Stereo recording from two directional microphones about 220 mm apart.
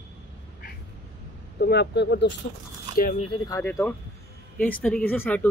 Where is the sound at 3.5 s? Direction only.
15° left (ahead or behind).